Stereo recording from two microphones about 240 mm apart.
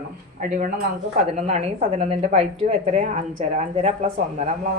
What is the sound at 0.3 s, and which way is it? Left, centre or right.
A woman's voice, right.